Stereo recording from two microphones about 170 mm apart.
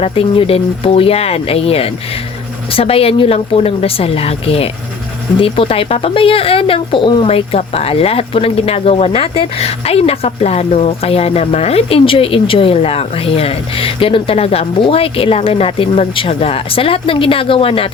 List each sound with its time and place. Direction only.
0.0 s speech: 35° left (ahead or behind)